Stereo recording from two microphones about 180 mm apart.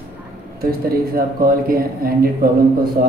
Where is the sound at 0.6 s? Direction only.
55° right (ahead or behind).